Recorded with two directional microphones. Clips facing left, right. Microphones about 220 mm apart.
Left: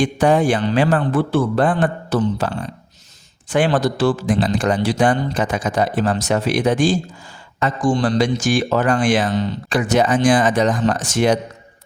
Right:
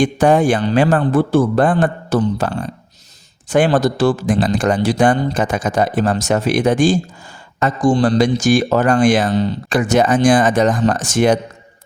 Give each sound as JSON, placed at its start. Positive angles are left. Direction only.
{"t": 0.0, "sound": "speech", "side_deg": -50}
{"t": 3.5, "sound": "speech", "side_deg": -45}
{"t": 7.6, "sound": "speech", "side_deg": -40}